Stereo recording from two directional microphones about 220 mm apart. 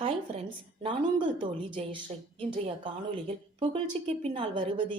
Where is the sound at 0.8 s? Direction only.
20° right (ahead or behind).